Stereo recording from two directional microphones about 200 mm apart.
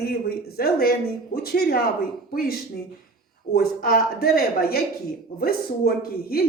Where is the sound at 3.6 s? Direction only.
50° left (ahead or behind).